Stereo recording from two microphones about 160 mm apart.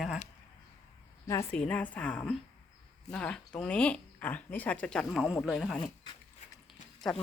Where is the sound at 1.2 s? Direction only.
20° left (ahead or behind).